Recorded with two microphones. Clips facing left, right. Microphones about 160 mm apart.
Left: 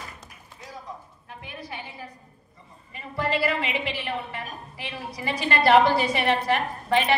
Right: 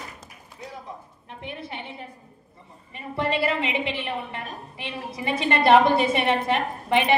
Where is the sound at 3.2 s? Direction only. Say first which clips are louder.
Right 1 dB; 25° right (ahead or behind).